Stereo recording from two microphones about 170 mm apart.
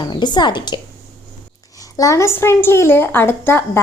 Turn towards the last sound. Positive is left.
turn(degrees=10)  # may be behind; listen again after turning